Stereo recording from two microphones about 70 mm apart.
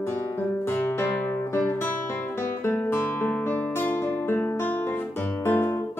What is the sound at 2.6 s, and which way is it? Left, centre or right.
Guitar, left.